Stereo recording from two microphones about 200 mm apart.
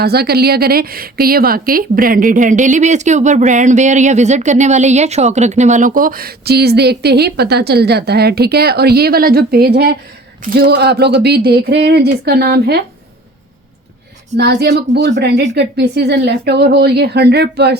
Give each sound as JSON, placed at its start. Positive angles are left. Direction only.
{"t": 0.0, "sound": "a woman's voice", "side_deg": -50}
{"t": 14.3, "sound": "a woman's voice", "side_deg": -55}